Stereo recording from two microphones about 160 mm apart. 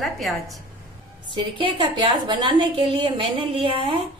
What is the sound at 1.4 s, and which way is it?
A woman's voice, 30° right (ahead or behind).